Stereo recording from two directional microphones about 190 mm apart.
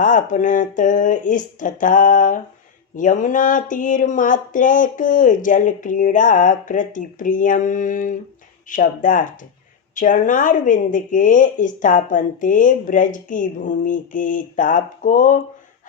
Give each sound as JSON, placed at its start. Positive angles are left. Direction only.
{"t": 0.0, "sound": "speech", "side_deg": 45}